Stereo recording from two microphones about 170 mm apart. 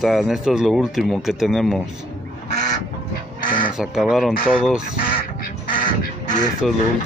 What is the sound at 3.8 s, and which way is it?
Speech, centre (ahead or behind).